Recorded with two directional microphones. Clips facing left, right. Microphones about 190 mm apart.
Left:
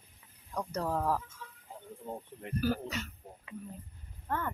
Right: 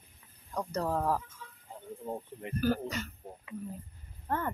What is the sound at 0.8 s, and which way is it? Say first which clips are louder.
Speech: right 1 dB; 5° right (ahead or behind).